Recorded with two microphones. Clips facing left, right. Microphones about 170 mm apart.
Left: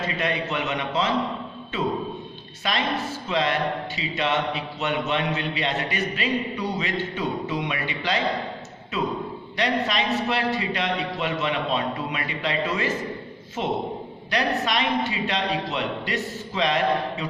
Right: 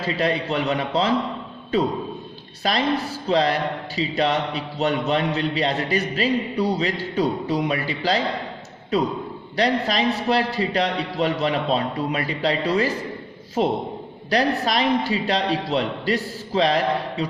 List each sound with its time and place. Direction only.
0.0 s a man's voice: 35° right (ahead or behind)